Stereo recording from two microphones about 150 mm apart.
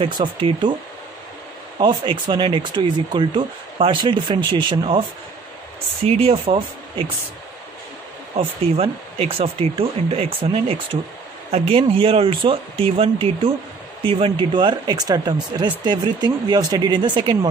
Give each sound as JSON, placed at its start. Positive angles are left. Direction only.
{"t": 0.0, "sound": "speech", "side_deg": -35}
{"t": 1.8, "sound": "speech", "side_deg": -35}
{"t": 6.0, "sound": "speech", "side_deg": -40}
{"t": 8.4, "sound": "speech", "side_deg": -40}